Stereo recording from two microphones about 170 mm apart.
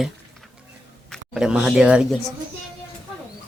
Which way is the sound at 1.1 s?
5° right (ahead or behind).